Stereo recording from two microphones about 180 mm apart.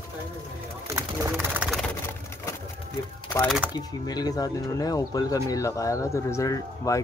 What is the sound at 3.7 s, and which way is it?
Speech, 20° left (ahead or behind).